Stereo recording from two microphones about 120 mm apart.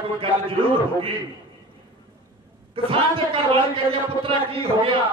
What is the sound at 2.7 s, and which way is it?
Speech, 50° right (ahead or behind).